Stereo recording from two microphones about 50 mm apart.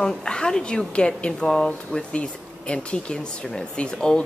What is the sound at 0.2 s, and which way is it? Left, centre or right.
A woman's voice, centre.